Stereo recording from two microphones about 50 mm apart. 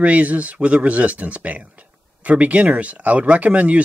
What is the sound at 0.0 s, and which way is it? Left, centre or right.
Speech, right.